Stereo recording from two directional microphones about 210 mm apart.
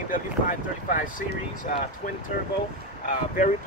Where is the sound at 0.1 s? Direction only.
40° left (ahead or behind).